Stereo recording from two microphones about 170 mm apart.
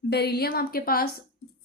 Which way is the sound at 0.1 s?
70° left (ahead or behind).